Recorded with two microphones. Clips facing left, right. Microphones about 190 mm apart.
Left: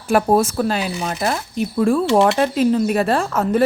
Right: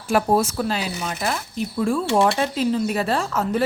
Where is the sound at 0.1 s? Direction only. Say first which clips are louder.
Left 3 dB; 55° left (ahead or behind).